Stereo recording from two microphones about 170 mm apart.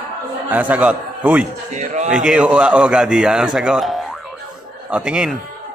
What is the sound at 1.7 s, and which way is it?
Speech, 45° right (ahead or behind).